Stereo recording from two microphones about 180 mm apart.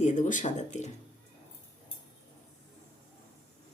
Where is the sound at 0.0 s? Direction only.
45° left (ahead or behind).